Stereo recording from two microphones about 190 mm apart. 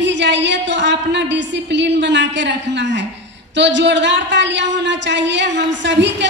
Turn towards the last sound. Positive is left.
turn(degrees=-65)  # may be behind; listen again after turning